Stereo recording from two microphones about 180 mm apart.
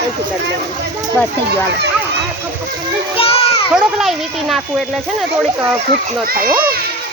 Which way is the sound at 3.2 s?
30° left (ahead or behind).